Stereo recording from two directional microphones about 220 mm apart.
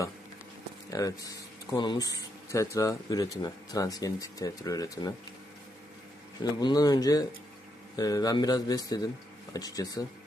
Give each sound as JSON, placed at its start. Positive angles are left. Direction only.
{"t": 0.9, "sound": "speech", "side_deg": 15}
{"t": 6.4, "sound": "speech", "side_deg": 20}